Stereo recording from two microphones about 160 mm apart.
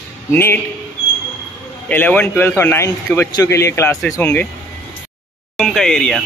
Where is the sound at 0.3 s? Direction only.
15° left (ahead or behind).